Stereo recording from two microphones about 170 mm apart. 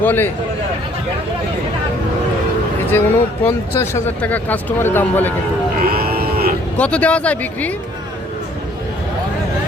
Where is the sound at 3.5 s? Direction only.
15° left (ahead or behind).